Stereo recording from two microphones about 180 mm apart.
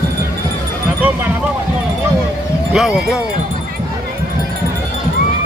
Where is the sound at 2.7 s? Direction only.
5° right (ahead or behind).